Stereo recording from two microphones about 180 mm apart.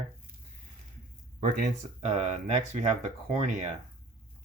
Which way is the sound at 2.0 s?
40° right (ahead or behind).